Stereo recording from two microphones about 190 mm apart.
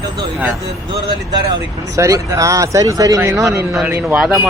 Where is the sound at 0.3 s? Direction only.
10° right (ahead or behind).